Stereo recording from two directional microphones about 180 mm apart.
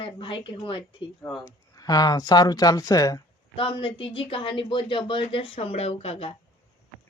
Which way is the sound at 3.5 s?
30° left (ahead or behind).